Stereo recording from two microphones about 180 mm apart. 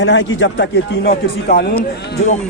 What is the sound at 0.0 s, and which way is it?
Speech, 90° left.